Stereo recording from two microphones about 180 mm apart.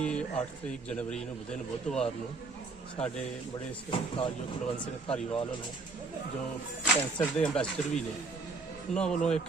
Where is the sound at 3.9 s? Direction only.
30° left (ahead or behind).